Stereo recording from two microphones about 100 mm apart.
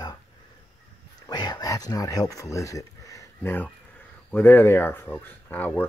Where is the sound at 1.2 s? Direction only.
40° left (ahead or behind).